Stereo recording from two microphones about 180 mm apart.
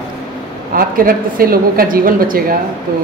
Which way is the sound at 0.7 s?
50° right (ahead or behind).